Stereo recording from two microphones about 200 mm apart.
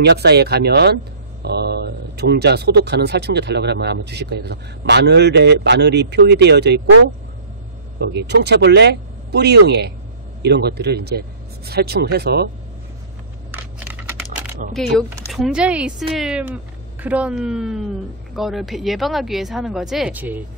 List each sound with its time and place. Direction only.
0.0 s speech: 55° right (ahead or behind)
8.1 s speech: 55° right (ahead or behind)
13.5 s a sound: 10° right (ahead or behind)
14.7 s speech: centre (ahead or behind)